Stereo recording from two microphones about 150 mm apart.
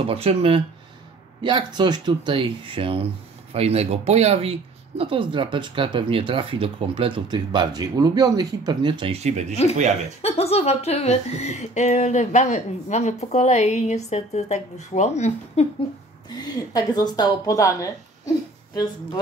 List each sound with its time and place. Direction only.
0.0 s speech: 40° right (ahead or behind)
1.4 s speech: 30° right (ahead or behind)
9.1 s speech: 50° right (ahead or behind)
10.2 s a woman's voice: 40° left (ahead or behind)
16.3 s speech: 25° left (ahead or behind)